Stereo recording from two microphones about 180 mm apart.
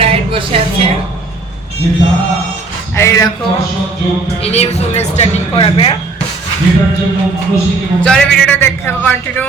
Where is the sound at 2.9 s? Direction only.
15° left (ahead or behind).